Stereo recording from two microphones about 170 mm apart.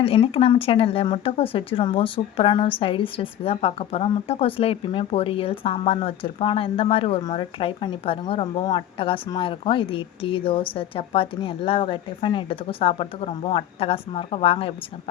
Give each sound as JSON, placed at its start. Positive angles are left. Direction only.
{"t": 0.0, "sound": "speech", "side_deg": 35}